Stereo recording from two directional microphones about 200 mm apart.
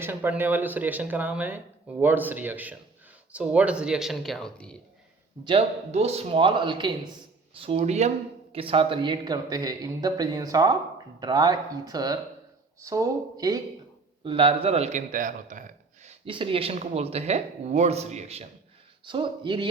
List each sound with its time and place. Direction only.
0.0 s speech: 10° right (ahead or behind)
5.5 s a man's voice: 30° right (ahead or behind)
16.0 s a man's voice: 25° right (ahead or behind)